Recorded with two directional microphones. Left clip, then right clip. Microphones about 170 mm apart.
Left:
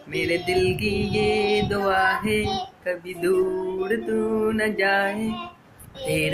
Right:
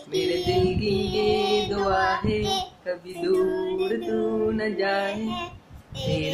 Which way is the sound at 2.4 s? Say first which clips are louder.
Even; 20° right (ahead or behind).